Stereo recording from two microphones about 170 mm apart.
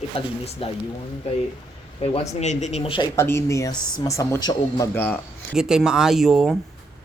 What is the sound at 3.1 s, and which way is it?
Speech, 15° left (ahead or behind).